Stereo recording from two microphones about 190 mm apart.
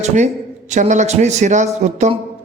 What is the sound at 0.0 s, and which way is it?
A woman's voice, 40° right (ahead or behind).